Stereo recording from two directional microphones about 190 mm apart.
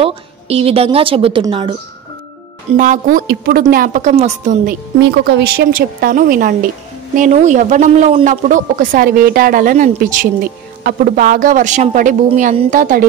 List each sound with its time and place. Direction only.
0.0 s a woman's voice: 30° right (ahead or behind)
2.8 s a woman's voice: 45° right (ahead or behind)
5.1 s a woman's voice: 60° right (ahead or behind); by 13.0 s 45° right (ahead or behind)